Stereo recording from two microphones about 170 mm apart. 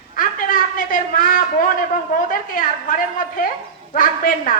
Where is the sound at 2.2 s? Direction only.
50° left (ahead or behind).